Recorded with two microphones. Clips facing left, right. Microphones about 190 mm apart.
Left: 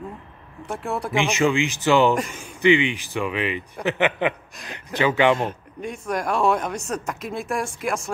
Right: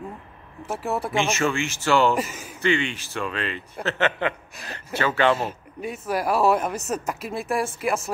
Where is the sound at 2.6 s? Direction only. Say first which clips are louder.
Left 5 dB; 15° left (ahead or behind).